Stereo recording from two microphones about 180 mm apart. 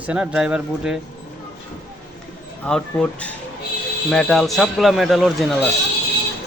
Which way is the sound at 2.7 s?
5° left (ahead or behind).